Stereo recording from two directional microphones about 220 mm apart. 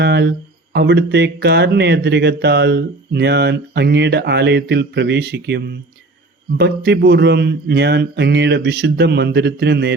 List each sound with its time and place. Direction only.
0.0 s speech: 50° right (ahead or behind)